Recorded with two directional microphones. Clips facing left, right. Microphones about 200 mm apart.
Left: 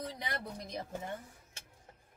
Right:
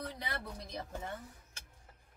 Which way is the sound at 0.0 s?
15° left (ahead or behind).